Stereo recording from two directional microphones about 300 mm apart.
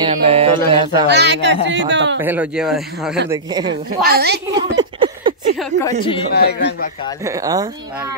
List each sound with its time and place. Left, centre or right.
0.0 s speech: centre
1.0 s speech: right
2.2 s speech: centre
3.3 s speech: centre
4.0 s speech: right
4.7 s a sound: centre
5.6 s a woman's voice: centre
6.3 s a man's voice: left
7.2 s speech: centre